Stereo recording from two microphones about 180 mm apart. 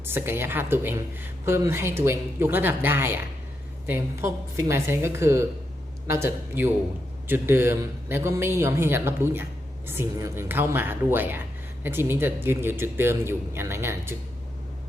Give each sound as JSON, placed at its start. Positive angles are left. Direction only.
{"t": 0.0, "sound": "a man's voice", "side_deg": -10}